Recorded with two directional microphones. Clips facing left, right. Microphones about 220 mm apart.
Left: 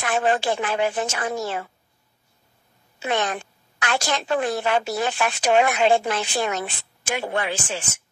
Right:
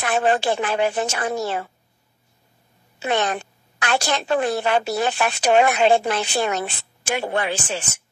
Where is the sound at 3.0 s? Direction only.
35° right (ahead or behind).